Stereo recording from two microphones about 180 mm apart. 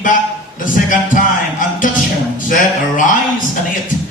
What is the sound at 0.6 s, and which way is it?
A man's voice, 45° left (ahead or behind).